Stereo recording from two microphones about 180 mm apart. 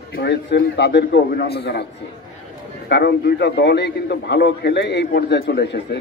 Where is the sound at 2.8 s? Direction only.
65° left (ahead or behind).